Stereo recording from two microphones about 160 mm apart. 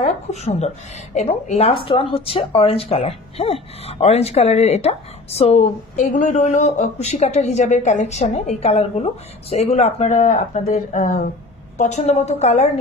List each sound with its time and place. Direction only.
0.0 s a woman's voice: 45° left (ahead or behind)